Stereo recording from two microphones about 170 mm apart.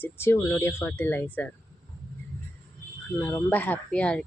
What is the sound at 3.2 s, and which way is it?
Speech, 10° left (ahead or behind).